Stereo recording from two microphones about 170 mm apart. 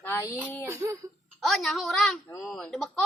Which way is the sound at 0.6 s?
15° right (ahead or behind).